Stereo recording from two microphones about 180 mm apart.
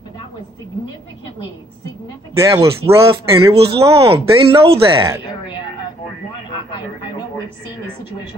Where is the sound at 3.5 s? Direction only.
30° right (ahead or behind).